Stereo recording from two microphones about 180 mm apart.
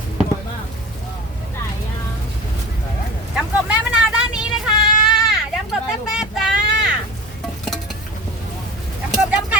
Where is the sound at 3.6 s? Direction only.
5° right (ahead or behind).